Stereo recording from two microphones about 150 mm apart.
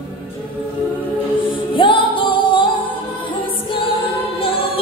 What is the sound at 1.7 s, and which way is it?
Music, 35° left (ahead or behind).